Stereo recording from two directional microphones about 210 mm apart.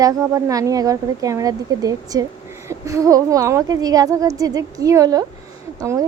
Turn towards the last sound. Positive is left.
turn(degrees=-15)  # may be behind; listen again after turning